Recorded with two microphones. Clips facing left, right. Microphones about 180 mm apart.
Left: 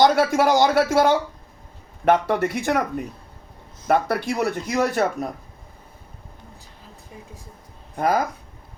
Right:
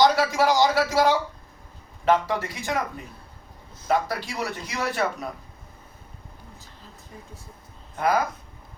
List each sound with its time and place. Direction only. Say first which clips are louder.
0.0 s a man's voice: left 3 dB; 50° left (ahead or behind)
3.8 s speech: left 4 dB; 55° left (ahead or behind)
7.9 s speech: left 2 dB; 45° left (ahead or behind)